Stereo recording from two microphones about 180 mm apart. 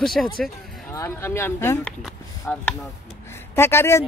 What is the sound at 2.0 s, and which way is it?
A woman's voice, centre (ahead or behind).